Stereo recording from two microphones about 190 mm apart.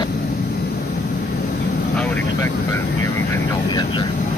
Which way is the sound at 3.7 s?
25° left (ahead or behind).